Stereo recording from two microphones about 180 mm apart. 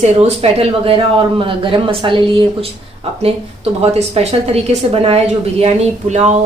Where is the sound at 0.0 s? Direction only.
40° right (ahead or behind).